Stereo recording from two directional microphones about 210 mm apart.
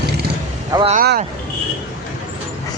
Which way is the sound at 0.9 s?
40° right (ahead or behind).